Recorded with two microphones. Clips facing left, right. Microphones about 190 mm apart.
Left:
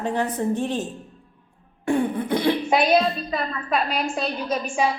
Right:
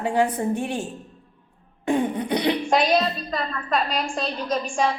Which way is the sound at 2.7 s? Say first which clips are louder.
Left 2 dB; 5° left (ahead or behind).